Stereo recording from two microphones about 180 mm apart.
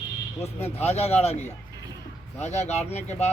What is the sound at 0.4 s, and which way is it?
Speech, 35° left (ahead or behind).